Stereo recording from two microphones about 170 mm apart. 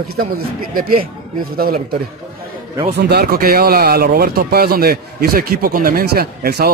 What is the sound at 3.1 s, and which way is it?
Speech, 65° right (ahead or behind).